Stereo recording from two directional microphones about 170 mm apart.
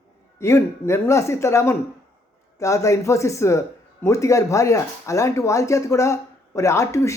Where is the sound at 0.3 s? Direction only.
15° left (ahead or behind).